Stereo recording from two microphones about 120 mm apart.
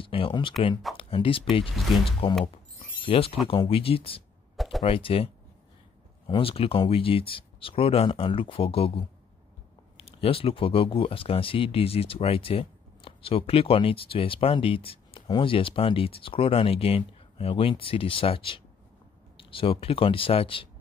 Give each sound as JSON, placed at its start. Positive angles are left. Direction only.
{"t": 0.0, "sound": "speech", "side_deg": 50}
{"t": 1.8, "sound": "speech", "side_deg": 0}
{"t": 3.0, "sound": "speech", "side_deg": 50}
{"t": 15.2, "sound": "speech", "side_deg": 35}
{"t": 15.5, "sound": "speech", "side_deg": 50}